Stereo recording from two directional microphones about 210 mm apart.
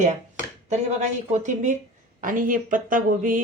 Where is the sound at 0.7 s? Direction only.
35° right (ahead or behind).